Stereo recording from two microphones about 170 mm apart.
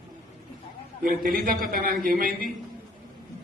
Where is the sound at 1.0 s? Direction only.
60° right (ahead or behind).